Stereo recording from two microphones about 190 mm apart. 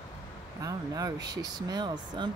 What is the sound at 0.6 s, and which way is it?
Speech, 15° right (ahead or behind).